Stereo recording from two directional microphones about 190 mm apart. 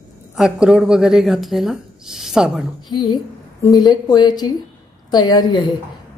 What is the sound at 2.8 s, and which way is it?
A woman's voice, 25° left (ahead or behind).